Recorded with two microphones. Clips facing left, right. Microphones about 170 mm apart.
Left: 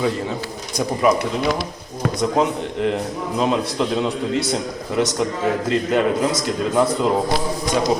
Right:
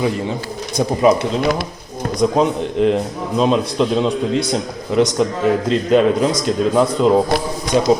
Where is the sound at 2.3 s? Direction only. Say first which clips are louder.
Right 3 dB; 20° right (ahead or behind).